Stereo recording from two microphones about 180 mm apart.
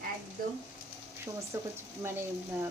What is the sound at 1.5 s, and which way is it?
Speech, 15° right (ahead or behind).